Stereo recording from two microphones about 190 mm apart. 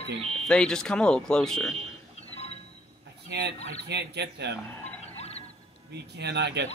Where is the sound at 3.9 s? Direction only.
65° right (ahead or behind).